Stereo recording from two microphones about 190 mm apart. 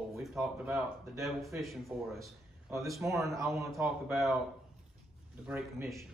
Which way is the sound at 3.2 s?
15° right (ahead or behind).